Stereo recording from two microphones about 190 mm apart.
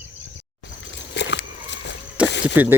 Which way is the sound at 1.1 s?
65° left (ahead or behind).